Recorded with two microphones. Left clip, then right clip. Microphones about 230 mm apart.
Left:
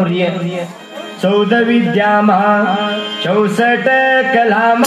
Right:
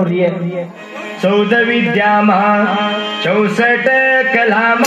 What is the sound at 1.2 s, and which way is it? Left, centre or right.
Mantra, left.